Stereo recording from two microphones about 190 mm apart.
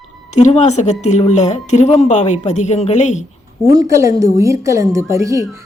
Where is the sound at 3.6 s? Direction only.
15° right (ahead or behind).